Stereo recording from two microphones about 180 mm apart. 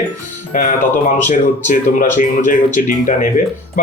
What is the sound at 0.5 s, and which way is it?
Music, 50° left (ahead or behind).